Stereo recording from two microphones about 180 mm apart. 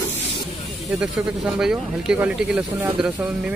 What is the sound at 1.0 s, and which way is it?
Speech, 5° right (ahead or behind).